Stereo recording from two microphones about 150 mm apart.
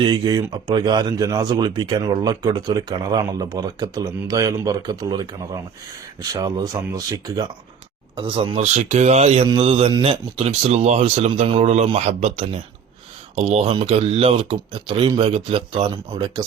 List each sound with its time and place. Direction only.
0.0 s speech: 30° right (ahead or behind)
8.6 s speech: 50° right (ahead or behind); by 16.5 s 30° right (ahead or behind)